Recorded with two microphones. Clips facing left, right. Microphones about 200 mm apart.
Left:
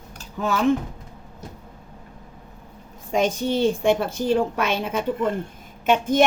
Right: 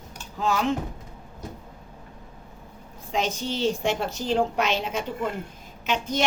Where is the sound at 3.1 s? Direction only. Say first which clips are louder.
Left 6 dB; 50° left (ahead or behind).